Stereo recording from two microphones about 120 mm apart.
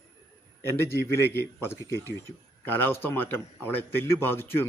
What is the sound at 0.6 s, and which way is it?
A man's voice, 20° left (ahead or behind).